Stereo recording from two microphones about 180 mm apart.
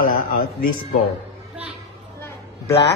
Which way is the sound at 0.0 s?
55° left (ahead or behind).